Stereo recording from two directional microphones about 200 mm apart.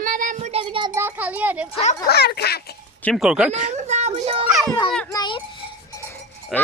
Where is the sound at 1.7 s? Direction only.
35° left (ahead or behind).